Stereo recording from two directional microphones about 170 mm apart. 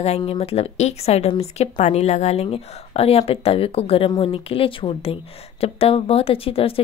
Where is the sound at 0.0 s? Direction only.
35° left (ahead or behind).